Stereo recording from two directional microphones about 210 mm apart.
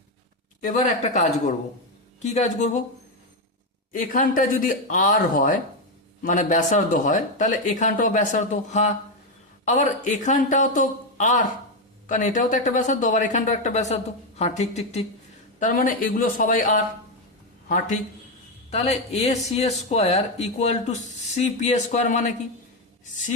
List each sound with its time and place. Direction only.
0.6 s speech: 35° left (ahead or behind)
3.9 s a man's voice: 40° left (ahead or behind)